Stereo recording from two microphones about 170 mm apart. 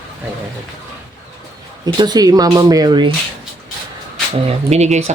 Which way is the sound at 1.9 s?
25° right (ahead or behind).